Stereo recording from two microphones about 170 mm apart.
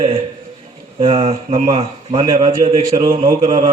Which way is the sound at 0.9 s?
35° right (ahead or behind).